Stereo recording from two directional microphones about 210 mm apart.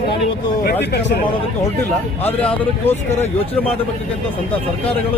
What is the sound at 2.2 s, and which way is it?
Speech, 10° left (ahead or behind).